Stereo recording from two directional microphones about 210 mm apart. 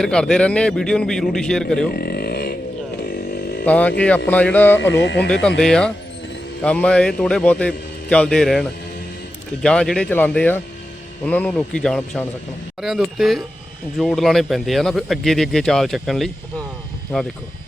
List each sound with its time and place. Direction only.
0.0 s speech: 5° left (ahead or behind)
1.9 s a sound: 45° left (ahead or behind)
3.1 s chainsaw: 45° left (ahead or behind)
3.7 s speech: 5° left (ahead or behind)
4.8 s speech: 60° left (ahead or behind)
5.3 s speech: 5° left (ahead or behind)
9.6 s speech: 5° left (ahead or behind)